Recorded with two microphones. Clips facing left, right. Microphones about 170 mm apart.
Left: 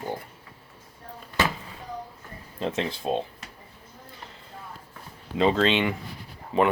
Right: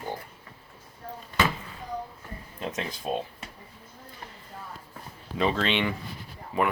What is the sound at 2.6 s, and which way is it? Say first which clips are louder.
Speech: left 5 dB; 25° left (ahead or behind).